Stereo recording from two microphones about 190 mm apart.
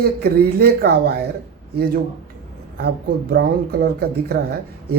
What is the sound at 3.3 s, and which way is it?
Speech, 55° right (ahead or behind).